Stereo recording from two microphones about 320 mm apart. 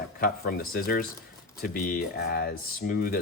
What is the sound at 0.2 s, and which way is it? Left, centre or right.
Speech, left.